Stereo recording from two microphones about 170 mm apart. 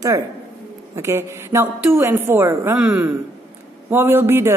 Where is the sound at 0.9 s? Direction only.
15° right (ahead or behind).